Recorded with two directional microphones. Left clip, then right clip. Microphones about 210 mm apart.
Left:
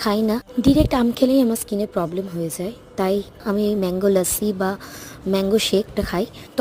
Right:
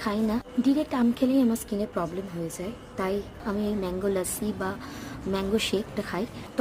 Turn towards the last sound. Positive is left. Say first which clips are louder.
# left 7 dB
turn(degrees=40)  # may be behind; listen again after turning